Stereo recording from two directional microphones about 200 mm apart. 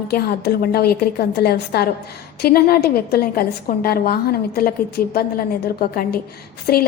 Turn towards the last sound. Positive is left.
turn(degrees=50)  # may be behind; listen again after turning